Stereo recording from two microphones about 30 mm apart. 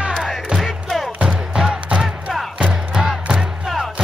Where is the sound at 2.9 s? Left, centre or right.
Centre.